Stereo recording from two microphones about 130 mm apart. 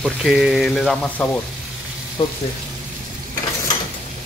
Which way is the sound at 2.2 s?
45° left (ahead or behind).